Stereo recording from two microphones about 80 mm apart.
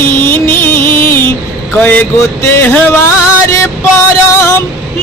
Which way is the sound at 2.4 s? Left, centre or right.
Left.